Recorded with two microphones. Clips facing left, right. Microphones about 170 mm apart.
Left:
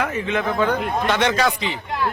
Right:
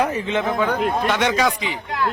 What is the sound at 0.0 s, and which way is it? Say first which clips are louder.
Speech: right 2 dB; 30° right (ahead or behind).